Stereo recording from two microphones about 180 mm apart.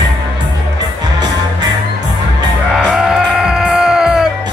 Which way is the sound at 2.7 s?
Centre (ahead or behind).